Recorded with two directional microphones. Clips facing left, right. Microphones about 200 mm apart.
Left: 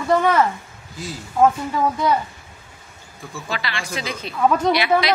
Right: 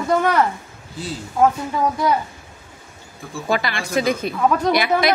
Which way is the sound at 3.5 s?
50° right (ahead or behind).